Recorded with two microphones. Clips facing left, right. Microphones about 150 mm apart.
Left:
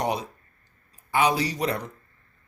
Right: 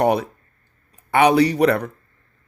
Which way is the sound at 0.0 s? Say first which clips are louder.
Right 9 dB; 60° right (ahead or behind).